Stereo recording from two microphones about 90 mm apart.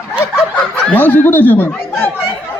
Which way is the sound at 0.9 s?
20° left (ahead or behind).